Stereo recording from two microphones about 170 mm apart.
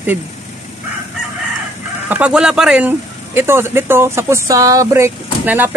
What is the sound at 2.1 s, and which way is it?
Speech, 5° right (ahead or behind).